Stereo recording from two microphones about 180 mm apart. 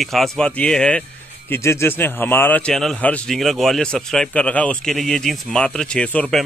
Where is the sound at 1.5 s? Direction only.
15° left (ahead or behind).